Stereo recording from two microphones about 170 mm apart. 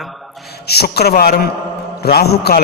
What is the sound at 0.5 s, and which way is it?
A man's voice, 70° left (ahead or behind).